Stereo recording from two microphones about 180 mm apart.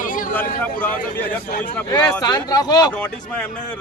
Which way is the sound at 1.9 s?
20° left (ahead or behind).